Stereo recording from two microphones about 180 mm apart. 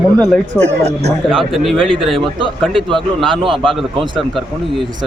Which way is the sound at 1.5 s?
Centre (ahead or behind).